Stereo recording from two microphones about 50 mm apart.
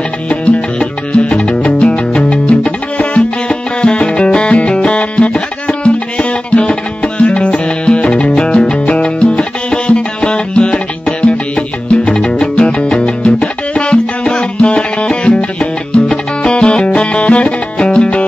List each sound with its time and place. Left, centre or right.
0.3 s music: left